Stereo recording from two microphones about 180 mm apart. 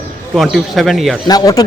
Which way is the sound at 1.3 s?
20° left (ahead or behind).